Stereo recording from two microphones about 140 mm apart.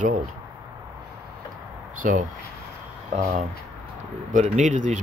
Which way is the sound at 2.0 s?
70° right (ahead or behind).